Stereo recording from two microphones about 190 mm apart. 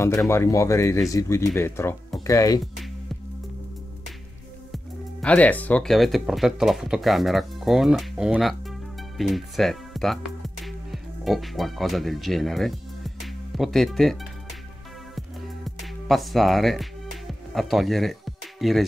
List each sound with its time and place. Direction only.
0.3 s speech: 15° left (ahead or behind)
5.2 s speech: 5° left (ahead or behind)
15.1 s music: centre (ahead or behind)